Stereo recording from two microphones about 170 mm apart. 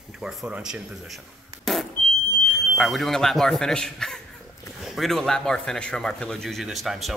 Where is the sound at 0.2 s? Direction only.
5° right (ahead or behind).